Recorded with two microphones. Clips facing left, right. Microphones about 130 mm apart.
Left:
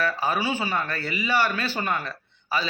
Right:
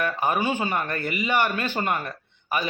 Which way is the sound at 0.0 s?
20° right (ahead or behind).